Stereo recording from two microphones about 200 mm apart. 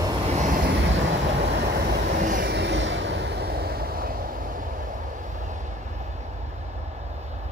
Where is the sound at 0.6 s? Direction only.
60° right (ahead or behind).